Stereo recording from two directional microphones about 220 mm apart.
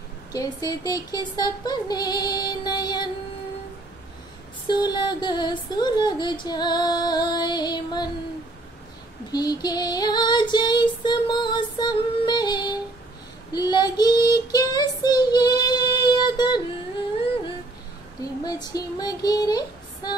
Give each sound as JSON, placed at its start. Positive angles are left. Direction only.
{"t": 0.3, "sound": "child singing", "side_deg": 15}
{"t": 4.6, "sound": "female singing", "side_deg": 20}
{"t": 9.3, "sound": "female singing", "side_deg": 20}
{"t": 13.5, "sound": "child singing", "side_deg": 20}
{"t": 18.2, "sound": "child singing", "side_deg": 15}